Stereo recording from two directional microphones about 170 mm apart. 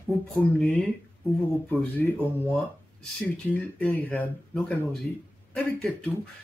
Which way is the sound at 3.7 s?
5° left (ahead or behind).